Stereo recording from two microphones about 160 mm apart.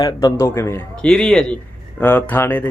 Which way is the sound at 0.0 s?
25° left (ahead or behind).